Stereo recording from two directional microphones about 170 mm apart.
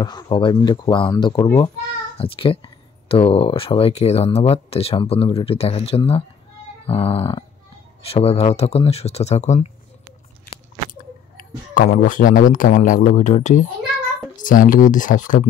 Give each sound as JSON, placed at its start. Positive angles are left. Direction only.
{"t": 0.0, "sound": "speech", "side_deg": 25}
{"t": 11.3, "sound": "a sound", "side_deg": 55}
{"t": 12.0, "sound": "speech", "side_deg": 50}